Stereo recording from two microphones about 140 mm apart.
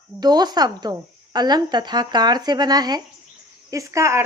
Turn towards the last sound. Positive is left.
turn(degrees=-20)  # may be behind; listen again after turning